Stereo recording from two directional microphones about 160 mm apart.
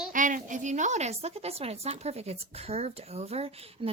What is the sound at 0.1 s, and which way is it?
A woman's voice, 55° right (ahead or behind).